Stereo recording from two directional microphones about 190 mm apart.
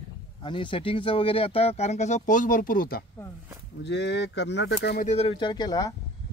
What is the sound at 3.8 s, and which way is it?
Speech, 65° left (ahead or behind).